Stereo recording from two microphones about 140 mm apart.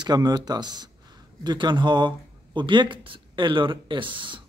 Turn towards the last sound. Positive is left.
turn(degrees=-35)  # may be behind; listen again after turning